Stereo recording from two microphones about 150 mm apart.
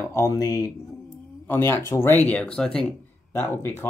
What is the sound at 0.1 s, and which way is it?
Speech, 20° left (ahead or behind).